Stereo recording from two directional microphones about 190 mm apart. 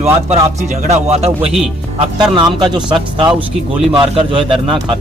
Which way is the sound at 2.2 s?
20° right (ahead or behind).